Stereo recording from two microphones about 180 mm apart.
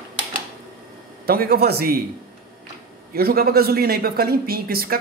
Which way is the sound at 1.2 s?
55° right (ahead or behind).